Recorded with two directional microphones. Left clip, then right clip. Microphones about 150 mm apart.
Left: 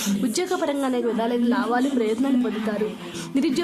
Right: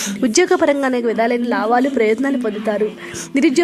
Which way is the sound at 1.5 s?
45° right (ahead or behind).